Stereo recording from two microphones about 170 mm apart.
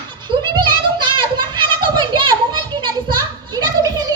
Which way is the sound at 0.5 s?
25° right (ahead or behind).